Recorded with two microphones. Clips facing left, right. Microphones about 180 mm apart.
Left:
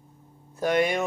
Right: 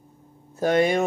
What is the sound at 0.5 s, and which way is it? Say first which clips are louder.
Speech: right 3 dB; 30° right (ahead or behind).